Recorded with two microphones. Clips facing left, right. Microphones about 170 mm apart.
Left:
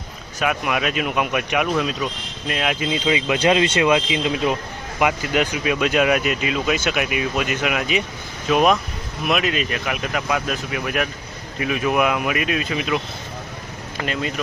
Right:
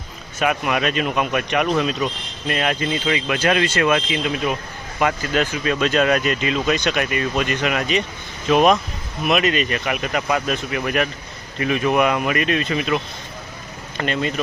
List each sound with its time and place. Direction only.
0.3 s speech: centre (ahead or behind)